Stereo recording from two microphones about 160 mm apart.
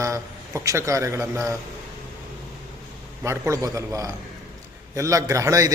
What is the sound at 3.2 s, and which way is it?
A man's voice, 20° right (ahead or behind).